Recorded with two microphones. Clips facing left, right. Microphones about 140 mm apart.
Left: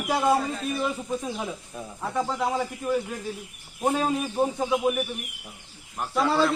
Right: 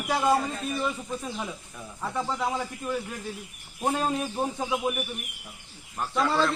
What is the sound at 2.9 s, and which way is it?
Speech, 10° left (ahead or behind).